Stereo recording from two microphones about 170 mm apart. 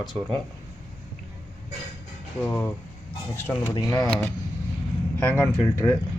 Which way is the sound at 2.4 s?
5° left (ahead or behind).